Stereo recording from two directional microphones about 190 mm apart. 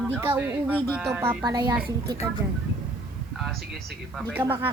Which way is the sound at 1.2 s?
15° right (ahead or behind).